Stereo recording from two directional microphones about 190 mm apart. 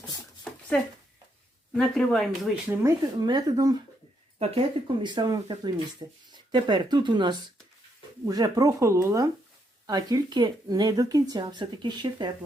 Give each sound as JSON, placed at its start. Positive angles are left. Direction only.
{"t": 0.5, "sound": "a sound", "side_deg": 5}
{"t": 1.7, "sound": "speech", "side_deg": 5}
{"t": 2.7, "sound": "speech", "side_deg": -10}
{"t": 3.2, "sound": "speech", "side_deg": -20}